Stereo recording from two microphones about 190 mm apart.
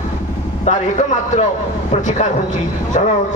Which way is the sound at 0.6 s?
40° left (ahead or behind).